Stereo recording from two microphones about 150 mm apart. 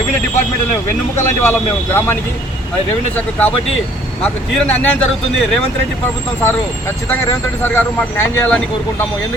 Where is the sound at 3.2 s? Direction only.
10° left (ahead or behind).